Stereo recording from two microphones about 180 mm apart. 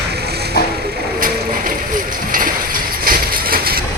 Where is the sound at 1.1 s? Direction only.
50° right (ahead or behind).